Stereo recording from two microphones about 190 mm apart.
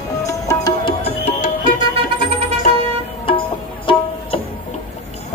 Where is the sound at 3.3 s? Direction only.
30° left (ahead or behind).